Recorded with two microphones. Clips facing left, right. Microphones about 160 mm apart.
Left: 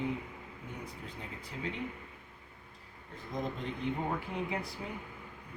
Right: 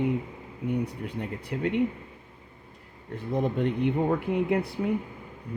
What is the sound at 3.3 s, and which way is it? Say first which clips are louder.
Speech: right 11 dB; 65° right (ahead or behind).